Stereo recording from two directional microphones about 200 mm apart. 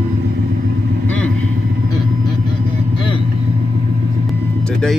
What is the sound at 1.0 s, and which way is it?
Vehicle, 5° left (ahead or behind).